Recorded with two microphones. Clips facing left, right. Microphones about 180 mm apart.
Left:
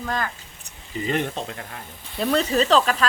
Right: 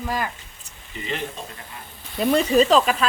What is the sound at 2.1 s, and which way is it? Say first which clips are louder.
Speech: right 3 dB; 10° right (ahead or behind).